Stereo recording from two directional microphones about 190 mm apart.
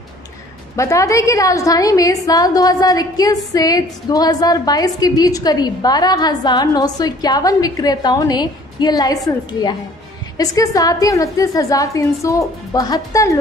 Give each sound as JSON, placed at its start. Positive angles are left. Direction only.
{"t": 0.7, "sound": "a woman's voice", "side_deg": 15}